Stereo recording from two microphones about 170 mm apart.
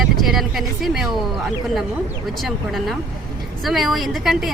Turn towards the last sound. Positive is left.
turn(degrees=0)  # may be behind; listen again after turning